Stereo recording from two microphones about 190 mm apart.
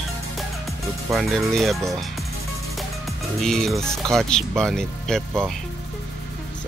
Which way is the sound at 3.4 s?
Centre (ahead or behind).